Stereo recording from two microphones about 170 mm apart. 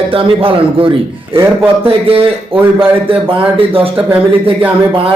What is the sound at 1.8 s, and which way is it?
Speech, 35° right (ahead or behind).